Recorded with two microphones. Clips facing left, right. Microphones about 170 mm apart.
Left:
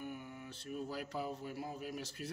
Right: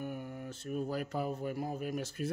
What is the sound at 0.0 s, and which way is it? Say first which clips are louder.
Speech: right 5 dB; 50° right (ahead or behind).